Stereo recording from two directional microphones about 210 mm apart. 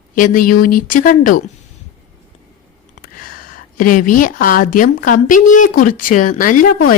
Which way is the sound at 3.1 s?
40° left (ahead or behind).